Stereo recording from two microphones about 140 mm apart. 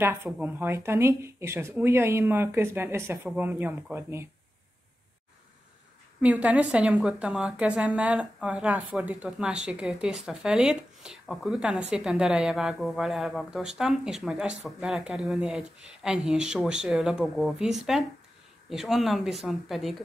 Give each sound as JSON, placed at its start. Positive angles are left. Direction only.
{"t": 0.0, "sound": "a woman's voice", "side_deg": -15}
{"t": 6.2, "sound": "a woman's voice", "side_deg": -10}